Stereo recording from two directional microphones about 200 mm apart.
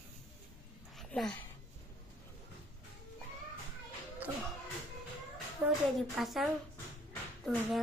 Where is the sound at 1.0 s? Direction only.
5° left (ahead or behind).